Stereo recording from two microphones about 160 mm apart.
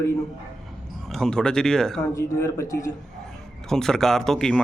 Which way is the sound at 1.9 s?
20° left (ahead or behind).